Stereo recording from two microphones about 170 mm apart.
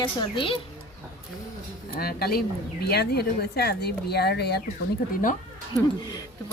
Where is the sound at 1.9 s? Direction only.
65° left (ahead or behind).